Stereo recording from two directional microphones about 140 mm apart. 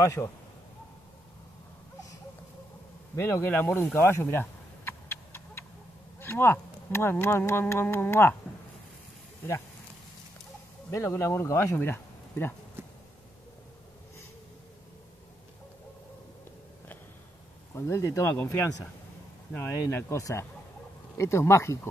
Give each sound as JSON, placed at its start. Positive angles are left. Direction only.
{"t": 0.0, "sound": "speech", "side_deg": 20}
{"t": 3.2, "sound": "speech", "side_deg": 15}
{"t": 3.9, "sound": "a sound", "side_deg": 15}
{"t": 6.1, "sound": "speech", "side_deg": 15}
{"t": 10.9, "sound": "speech", "side_deg": 20}
{"t": 17.7, "sound": "speech", "side_deg": 20}